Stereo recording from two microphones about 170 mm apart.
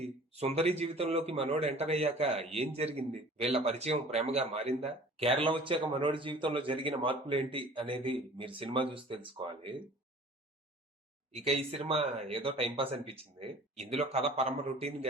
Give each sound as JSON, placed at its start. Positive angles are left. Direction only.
{"t": 0.0, "sound": "a man's voice", "side_deg": -35}
{"t": 11.4, "sound": "a man's voice", "side_deg": -35}